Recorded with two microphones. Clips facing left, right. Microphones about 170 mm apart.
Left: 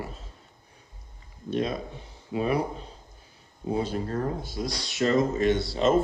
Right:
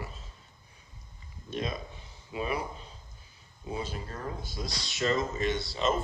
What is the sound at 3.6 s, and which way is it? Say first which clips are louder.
Speech: left 8 dB; 60° left (ahead or behind).